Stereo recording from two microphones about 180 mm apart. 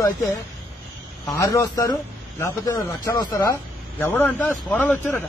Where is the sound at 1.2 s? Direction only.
20° left (ahead or behind).